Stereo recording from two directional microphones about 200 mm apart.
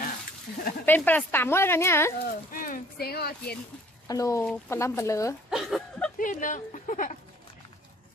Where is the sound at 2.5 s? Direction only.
45° left (ahead or behind).